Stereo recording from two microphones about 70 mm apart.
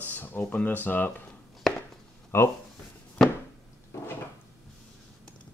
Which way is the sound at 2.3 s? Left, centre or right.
Left.